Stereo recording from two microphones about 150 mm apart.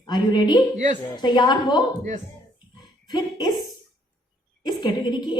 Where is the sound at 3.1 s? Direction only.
25° left (ahead or behind).